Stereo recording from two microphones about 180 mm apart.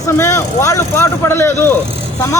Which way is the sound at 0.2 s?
15° left (ahead or behind).